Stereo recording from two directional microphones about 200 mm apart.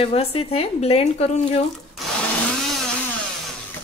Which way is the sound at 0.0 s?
30° left (ahead or behind).